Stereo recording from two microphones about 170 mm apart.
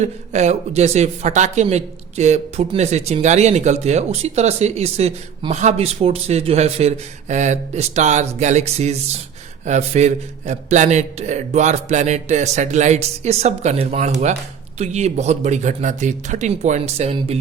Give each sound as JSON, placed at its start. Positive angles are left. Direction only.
{"t": 0.0, "sound": "a man's voice", "side_deg": -40}